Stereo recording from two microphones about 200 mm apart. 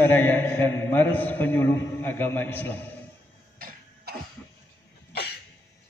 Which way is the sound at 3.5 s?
45° right (ahead or behind).